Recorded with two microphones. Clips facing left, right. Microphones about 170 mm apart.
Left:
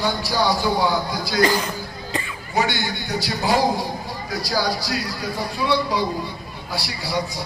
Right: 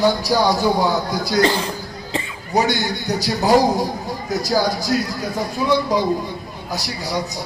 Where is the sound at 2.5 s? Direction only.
40° right (ahead or behind).